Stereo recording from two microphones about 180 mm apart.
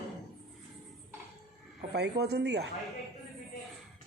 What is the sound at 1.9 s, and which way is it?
Speech, 65° right (ahead or behind).